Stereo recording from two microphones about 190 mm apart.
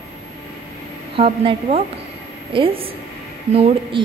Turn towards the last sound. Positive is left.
turn(degrees=-30)  # may be behind; listen again after turning